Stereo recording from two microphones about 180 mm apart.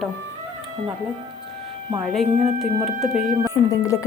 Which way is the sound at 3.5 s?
15° left (ahead or behind).